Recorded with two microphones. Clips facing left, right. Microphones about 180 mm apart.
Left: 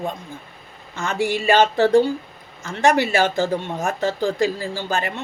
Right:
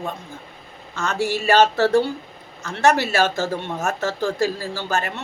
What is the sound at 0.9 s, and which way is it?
Speech, 15° left (ahead or behind).